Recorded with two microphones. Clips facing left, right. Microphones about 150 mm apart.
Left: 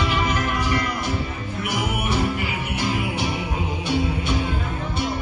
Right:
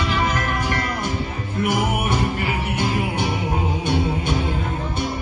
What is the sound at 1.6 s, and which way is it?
Music, 50° right (ahead or behind).